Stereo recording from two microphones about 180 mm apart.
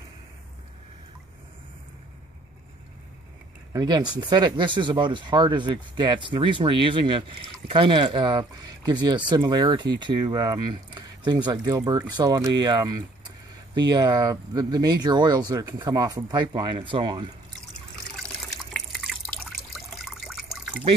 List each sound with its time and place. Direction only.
3.7 s speech: 20° right (ahead or behind)
18.7 s water: centre (ahead or behind)